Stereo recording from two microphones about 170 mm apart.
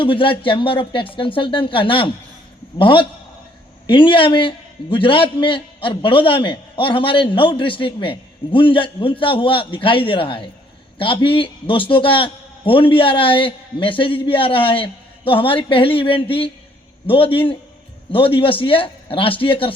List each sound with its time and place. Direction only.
0.0 s a man's voice: 30° left (ahead or behind)